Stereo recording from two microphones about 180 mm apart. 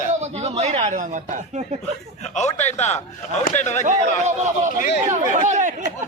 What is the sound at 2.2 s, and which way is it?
A man's voice, 40° left (ahead or behind).